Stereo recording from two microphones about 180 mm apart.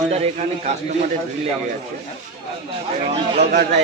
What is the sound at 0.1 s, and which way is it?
Speech, 40° right (ahead or behind).